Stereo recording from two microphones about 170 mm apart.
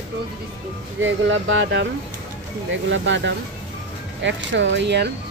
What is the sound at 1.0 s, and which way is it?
Speech, 90° right.